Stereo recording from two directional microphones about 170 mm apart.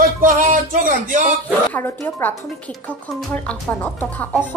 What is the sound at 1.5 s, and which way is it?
Speech, 10° left (ahead or behind).